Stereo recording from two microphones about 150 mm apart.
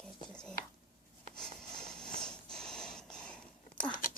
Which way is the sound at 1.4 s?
5° left (ahead or behind).